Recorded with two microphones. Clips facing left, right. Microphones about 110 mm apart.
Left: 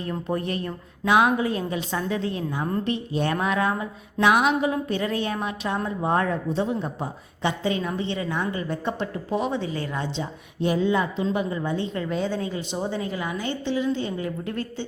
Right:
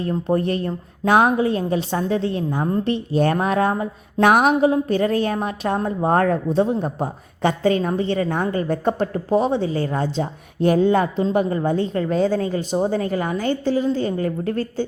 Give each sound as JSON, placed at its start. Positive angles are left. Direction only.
{"t": 0.0, "sound": "a woman's voice", "side_deg": -35}
{"t": 11.2, "sound": "a woman's voice", "side_deg": -35}